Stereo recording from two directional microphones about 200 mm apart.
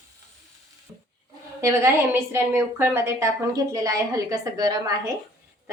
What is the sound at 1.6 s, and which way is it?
A woman's voice, 15° right (ahead or behind).